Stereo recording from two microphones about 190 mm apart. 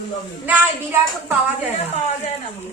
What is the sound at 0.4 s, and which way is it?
Speech, 10° right (ahead or behind).